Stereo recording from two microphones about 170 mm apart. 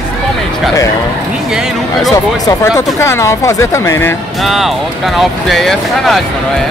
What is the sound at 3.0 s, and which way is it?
Speech, 15° left (ahead or behind).